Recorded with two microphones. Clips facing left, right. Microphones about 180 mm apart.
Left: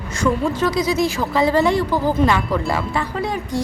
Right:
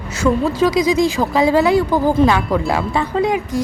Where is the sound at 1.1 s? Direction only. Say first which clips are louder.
Right 3 dB; 15° right (ahead or behind).